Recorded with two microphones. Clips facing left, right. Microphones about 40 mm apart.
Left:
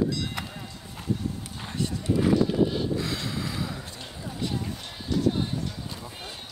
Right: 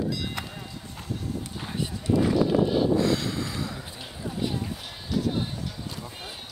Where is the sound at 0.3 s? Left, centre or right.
Centre.